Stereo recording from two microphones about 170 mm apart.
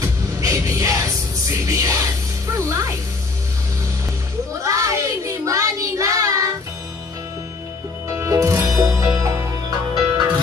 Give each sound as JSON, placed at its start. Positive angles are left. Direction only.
{"t": 0.0, "sound": "music", "side_deg": -20}
{"t": 2.4, "sound": "speech", "side_deg": -20}
{"t": 4.6, "sound": "child singing", "side_deg": -20}
{"t": 8.1, "sound": "music", "side_deg": -20}